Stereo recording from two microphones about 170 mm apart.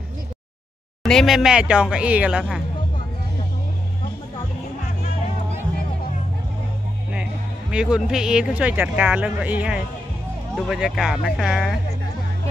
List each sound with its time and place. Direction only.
1.0 s speech: centre (ahead or behind)
7.7 s speech: 5° right (ahead or behind)